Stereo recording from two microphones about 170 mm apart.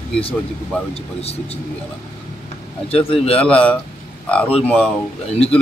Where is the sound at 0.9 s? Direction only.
35° left (ahead or behind).